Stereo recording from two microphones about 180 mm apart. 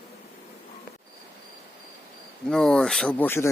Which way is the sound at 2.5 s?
5° left (ahead or behind).